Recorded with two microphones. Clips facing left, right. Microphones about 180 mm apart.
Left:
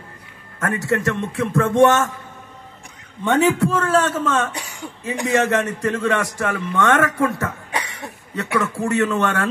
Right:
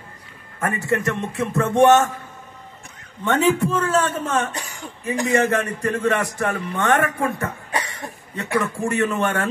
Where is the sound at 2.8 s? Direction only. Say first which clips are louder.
Left 2 dB; 15° left (ahead or behind).